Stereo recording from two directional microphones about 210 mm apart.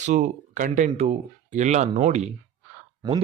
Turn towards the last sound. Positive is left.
turn(degrees=-20)  # may be behind; listen again after turning